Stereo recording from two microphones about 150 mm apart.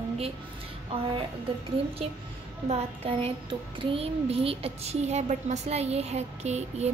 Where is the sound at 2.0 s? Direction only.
40° right (ahead or behind).